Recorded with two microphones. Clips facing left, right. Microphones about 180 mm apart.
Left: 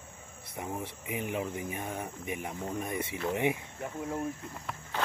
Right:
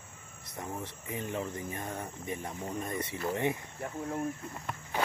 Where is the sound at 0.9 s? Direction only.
15° left (ahead or behind).